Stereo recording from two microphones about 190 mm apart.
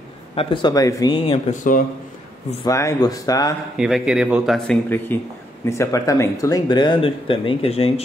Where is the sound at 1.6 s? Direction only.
45° left (ahead or behind).